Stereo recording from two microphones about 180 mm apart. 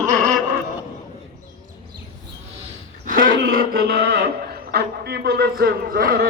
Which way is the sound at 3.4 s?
55° right (ahead or behind).